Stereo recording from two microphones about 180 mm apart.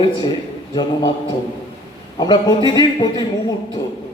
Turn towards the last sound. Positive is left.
turn(degrees=25)  # may be behind; listen again after turning